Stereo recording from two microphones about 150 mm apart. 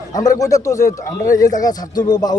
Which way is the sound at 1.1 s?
65° left (ahead or behind).